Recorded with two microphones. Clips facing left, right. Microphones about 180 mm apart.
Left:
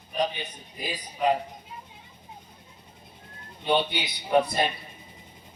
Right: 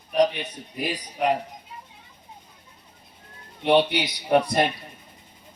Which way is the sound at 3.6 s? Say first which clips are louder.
Right 6 dB; 80° right.